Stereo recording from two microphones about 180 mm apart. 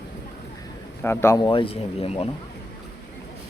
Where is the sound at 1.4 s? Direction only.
30° left (ahead or behind).